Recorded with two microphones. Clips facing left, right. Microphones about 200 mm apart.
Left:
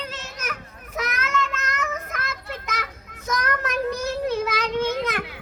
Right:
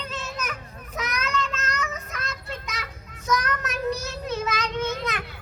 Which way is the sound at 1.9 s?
55° left (ahead or behind).